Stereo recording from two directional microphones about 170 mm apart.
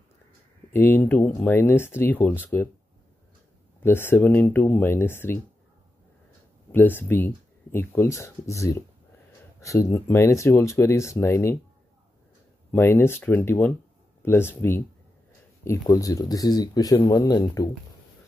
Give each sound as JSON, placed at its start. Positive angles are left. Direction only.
{"t": 0.7, "sound": "speech", "side_deg": 10}
{"t": 3.8, "sound": "speech", "side_deg": 15}
{"t": 6.7, "sound": "speech", "side_deg": 10}
{"t": 12.7, "sound": "speech", "side_deg": 15}